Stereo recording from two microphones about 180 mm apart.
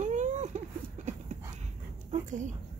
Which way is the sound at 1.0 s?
40° right (ahead or behind).